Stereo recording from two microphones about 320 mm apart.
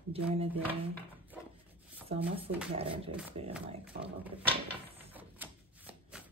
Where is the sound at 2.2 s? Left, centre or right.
Centre.